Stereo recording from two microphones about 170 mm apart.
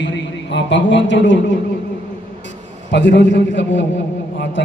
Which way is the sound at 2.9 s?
90° left.